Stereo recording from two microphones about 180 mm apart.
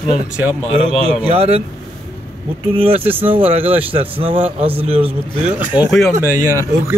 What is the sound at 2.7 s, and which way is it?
Speech, 30° right (ahead or behind).